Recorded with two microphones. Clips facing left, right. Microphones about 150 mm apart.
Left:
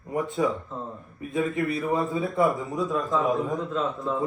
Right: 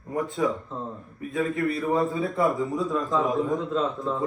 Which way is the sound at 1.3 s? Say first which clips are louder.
Even; centre (ahead or behind).